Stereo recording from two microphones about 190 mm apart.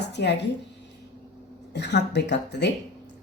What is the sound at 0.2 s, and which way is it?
Speech, 60° left (ahead or behind).